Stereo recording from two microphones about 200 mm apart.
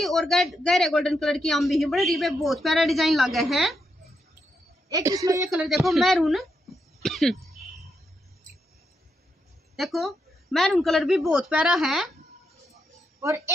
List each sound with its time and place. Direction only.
0.0 s a man's voice: centre (ahead or behind)
4.8 s a woman's voice: 15° right (ahead or behind)
5.5 s a man's voice: centre (ahead or behind)
9.8 s a man's voice: centre (ahead or behind)